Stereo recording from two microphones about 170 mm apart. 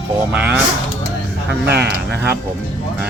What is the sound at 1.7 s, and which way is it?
Speech, 75° right (ahead or behind).